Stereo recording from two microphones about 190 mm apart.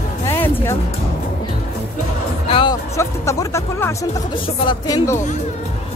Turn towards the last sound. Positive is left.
turn(degrees=20)  # may be behind; listen again after turning